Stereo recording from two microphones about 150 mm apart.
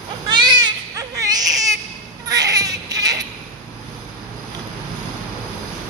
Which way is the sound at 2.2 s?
25° right (ahead or behind).